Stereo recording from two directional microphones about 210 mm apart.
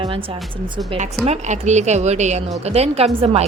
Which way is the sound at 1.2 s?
35° right (ahead or behind).